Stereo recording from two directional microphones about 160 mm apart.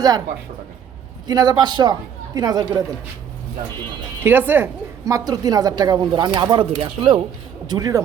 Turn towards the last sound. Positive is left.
turn(degrees=-25)  # may be behind; listen again after turning